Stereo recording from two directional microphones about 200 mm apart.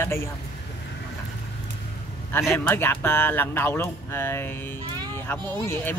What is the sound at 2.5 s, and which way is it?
Speech, 10° left (ahead or behind).